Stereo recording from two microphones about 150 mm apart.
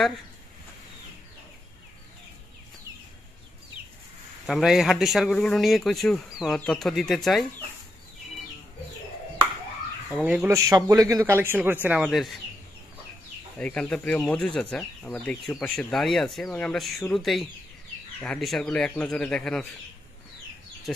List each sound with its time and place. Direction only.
4.5 s speech: centre (ahead or behind)
10.1 s speech: 10° right (ahead or behind)
10.5 s speech: 20° right (ahead or behind); by 12.4 s centre (ahead or behind)
13.6 s speech: 10° left (ahead or behind)